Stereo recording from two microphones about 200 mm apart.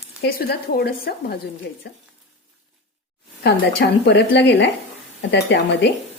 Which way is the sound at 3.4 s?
55° left (ahead or behind).